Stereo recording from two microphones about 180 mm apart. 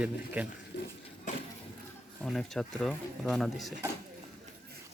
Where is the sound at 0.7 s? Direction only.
80° left.